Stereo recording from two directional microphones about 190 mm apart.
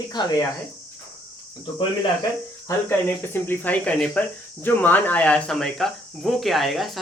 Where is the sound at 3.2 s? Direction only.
10° left (ahead or behind).